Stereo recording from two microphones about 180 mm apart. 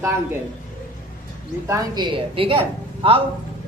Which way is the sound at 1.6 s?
20° right (ahead or behind).